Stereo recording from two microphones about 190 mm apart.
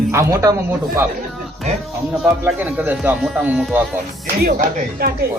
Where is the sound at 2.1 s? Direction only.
Centre (ahead or behind).